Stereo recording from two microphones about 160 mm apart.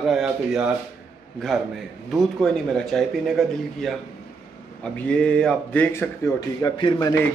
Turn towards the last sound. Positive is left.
turn(degrees=25)  # may be behind; listen again after turning